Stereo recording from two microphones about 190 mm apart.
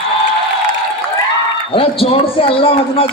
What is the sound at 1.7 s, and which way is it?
A man's voice, 30° left (ahead or behind).